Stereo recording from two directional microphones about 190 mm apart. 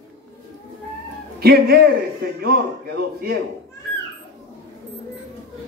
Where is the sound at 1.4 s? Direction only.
55° right (ahead or behind).